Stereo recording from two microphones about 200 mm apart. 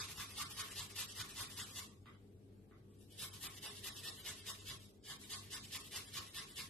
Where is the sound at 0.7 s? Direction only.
Centre (ahead or behind).